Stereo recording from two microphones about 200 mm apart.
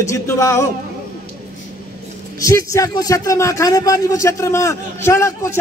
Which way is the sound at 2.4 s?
15° left (ahead or behind).